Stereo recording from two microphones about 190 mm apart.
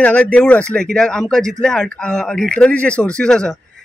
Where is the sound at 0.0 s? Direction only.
5° left (ahead or behind).